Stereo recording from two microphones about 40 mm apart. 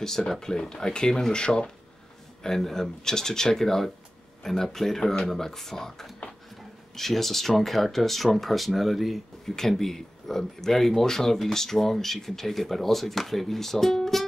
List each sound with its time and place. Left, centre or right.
0.3 s speech: centre
2.4 s speech: centre
5.0 s speech: left
5.3 s speech: centre
9.6 s speech: centre